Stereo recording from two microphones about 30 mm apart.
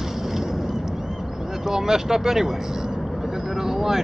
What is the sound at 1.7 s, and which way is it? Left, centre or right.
Speech, centre.